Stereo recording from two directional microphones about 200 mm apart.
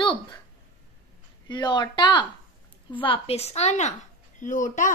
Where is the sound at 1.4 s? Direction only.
20° left (ahead or behind); by 4.9 s 40° left (ahead or behind).